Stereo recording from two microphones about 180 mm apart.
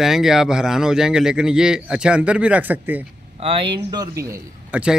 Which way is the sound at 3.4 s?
30° right (ahead or behind).